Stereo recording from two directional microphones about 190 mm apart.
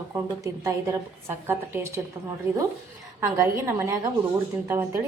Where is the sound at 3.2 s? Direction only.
15° right (ahead or behind).